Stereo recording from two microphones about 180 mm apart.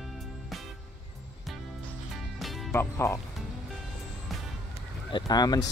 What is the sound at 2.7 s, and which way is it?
Speech, 15° left (ahead or behind).